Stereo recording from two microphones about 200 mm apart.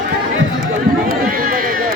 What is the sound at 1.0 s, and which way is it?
Run, 45° right (ahead or behind).